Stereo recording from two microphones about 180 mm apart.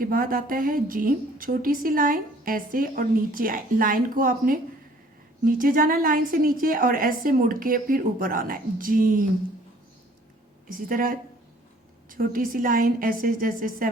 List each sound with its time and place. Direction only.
0.0 s a woman's voice: 50° right (ahead or behind)
10.8 s a woman's voice: 50° right (ahead or behind)